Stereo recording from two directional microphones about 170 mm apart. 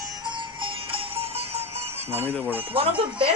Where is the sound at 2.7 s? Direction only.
30° right (ahead or behind).